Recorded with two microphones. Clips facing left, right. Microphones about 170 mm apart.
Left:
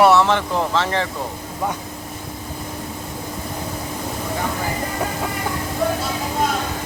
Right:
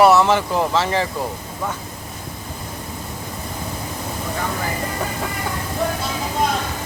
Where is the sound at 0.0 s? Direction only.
Centre (ahead or behind).